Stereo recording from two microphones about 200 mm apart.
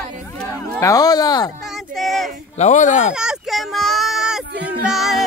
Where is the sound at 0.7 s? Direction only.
15° left (ahead or behind).